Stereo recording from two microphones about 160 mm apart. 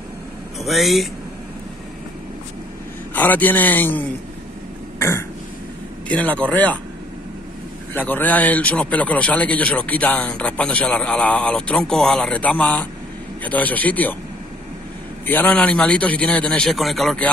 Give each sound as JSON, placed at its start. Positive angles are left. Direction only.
{"t": 0.6, "sound": "speech", "side_deg": 0}
{"t": 3.2, "sound": "a man's voice", "side_deg": 10}
{"t": 4.9, "sound": "throat clearing", "side_deg": 15}
{"t": 6.0, "sound": "a man's voice", "side_deg": 10}
{"t": 7.9, "sound": "a man's voice", "side_deg": 10}
{"t": 15.2, "sound": "a man's voice", "side_deg": 10}